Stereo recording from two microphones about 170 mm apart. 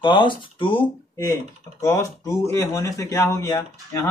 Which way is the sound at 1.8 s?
15° left (ahead or behind).